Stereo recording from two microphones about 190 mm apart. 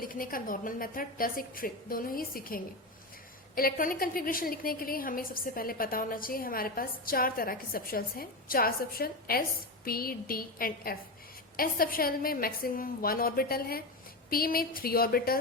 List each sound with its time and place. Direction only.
0.0 s a woman's voice: 50° left (ahead or behind)